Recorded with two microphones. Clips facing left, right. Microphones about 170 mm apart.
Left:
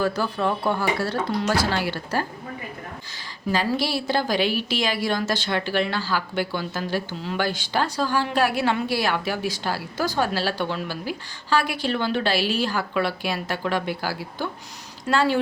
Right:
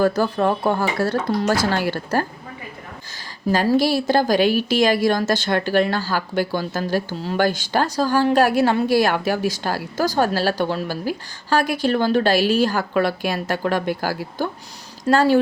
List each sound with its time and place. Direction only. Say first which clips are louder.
0.0 s a woman's voice: right 5 dB; 45° right (ahead or behind)
3.5 s a woman's voice: right 6 dB; 45° right (ahead or behind)